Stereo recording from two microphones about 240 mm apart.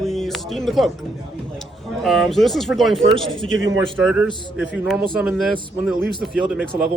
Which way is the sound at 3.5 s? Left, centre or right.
Right.